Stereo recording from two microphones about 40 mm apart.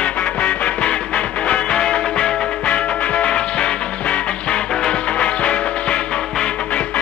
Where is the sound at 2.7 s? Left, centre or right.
Left.